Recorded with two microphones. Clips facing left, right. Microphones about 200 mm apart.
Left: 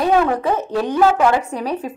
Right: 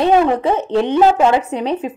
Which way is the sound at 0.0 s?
20° right (ahead or behind).